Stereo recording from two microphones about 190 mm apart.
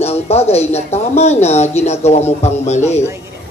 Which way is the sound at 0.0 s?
35° left (ahead or behind).